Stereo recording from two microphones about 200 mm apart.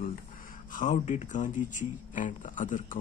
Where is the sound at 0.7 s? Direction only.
40° left (ahead or behind).